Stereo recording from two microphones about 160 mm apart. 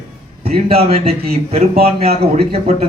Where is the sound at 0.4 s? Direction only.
40° right (ahead or behind).